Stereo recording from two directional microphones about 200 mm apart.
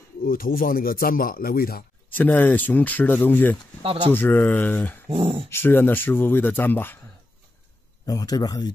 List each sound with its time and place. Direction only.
0.2 s speech: 45° left (ahead or behind)
2.0 s speech: 10° left (ahead or behind)
3.8 s speech: 25° right (ahead or behind)
4.1 s speech: 10° left (ahead or behind)
8.0 s a man's voice: 20° left (ahead or behind)